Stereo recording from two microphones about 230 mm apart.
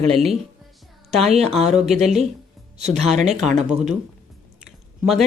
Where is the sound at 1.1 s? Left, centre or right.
Right.